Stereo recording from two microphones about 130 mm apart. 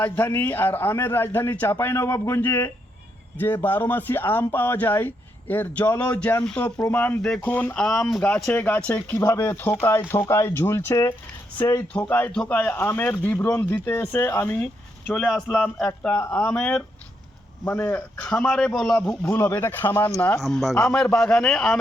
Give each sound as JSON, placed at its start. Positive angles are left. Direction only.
{"t": 0.0, "sound": "a man's voice", "side_deg": 15}
{"t": 9.1, "sound": "a man's voice", "side_deg": 20}
{"t": 14.6, "sound": "a man's voice", "side_deg": 5}
{"t": 19.4, "sound": "a man's voice", "side_deg": 20}
{"t": 20.4, "sound": "a man's voice", "side_deg": 0}